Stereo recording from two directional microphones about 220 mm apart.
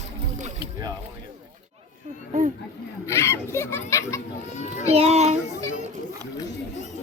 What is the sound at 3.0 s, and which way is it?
Children playing, 10° left (ahead or behind).